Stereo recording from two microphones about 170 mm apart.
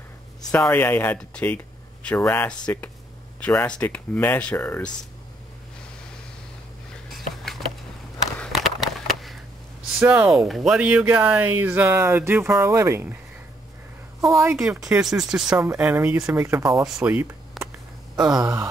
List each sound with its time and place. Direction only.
0.7 s speech: 10° left (ahead or behind)
7.2 s a sound: centre (ahead or behind)
9.9 s speech: 5° right (ahead or behind)
14.2 s speech: 15° right (ahead or behind)
15.2 s speech: 5° right (ahead or behind)
18.2 s a sound: 25° right (ahead or behind)